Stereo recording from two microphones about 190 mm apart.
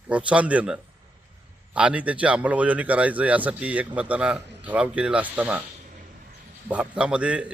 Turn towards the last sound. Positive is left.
turn(degrees=-5)  # may be behind; listen again after turning